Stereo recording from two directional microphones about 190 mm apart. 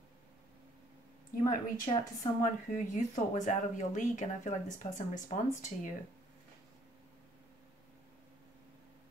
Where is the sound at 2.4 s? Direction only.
40° left (ahead or behind).